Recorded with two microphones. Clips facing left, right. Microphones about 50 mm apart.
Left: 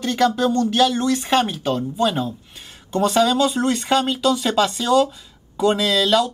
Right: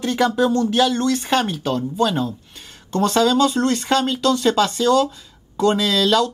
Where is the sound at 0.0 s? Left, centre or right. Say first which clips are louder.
Even; centre.